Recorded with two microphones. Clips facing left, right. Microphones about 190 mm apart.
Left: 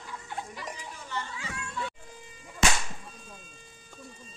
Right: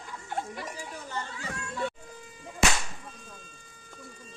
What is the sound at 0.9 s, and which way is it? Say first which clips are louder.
Children playing: right 1 dB; 45° right (ahead or behind).